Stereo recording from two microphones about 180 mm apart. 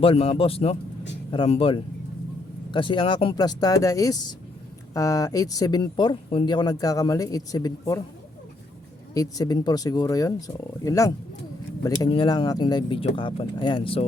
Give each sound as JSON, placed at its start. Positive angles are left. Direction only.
{"t": 0.0, "sound": "a man's voice", "side_deg": 30}
{"t": 9.1, "sound": "speech", "side_deg": 20}